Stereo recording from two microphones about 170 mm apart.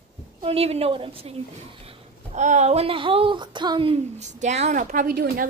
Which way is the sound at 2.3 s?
45° right (ahead or behind).